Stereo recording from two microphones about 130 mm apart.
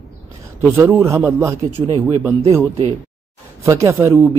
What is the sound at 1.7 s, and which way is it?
Speech, 35° right (ahead or behind).